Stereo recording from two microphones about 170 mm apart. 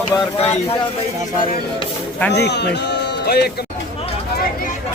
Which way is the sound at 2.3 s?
80° left.